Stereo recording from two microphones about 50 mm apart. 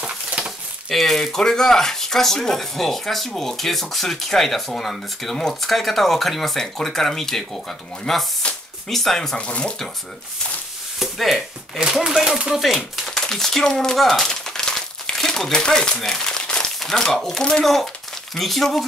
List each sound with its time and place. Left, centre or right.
0.4 s a sound: right
0.8 s speech: centre
9.4 s speech: left
11.0 s speech: centre
11.8 s speech: centre
12.5 s speech: centre
13.9 s crumpling: centre
16.8 s speech: centre